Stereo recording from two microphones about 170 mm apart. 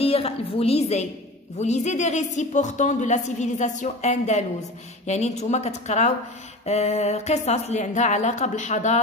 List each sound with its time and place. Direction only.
0.0 s a woman's voice: 35° left (ahead or behind)